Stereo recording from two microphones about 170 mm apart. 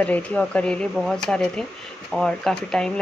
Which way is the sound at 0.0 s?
10° left (ahead or behind).